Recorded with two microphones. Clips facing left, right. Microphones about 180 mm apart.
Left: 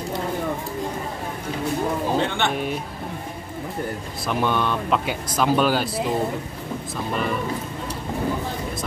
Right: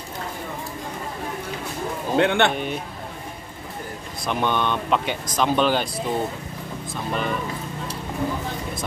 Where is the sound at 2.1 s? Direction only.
65° right (ahead or behind).